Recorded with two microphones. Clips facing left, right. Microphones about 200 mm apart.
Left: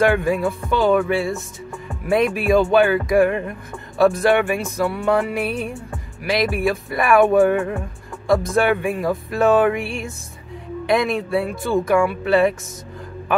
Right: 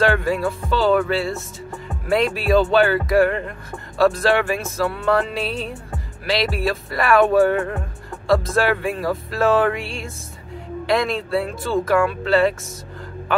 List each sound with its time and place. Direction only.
0.0 s music: 20° left (ahead or behind)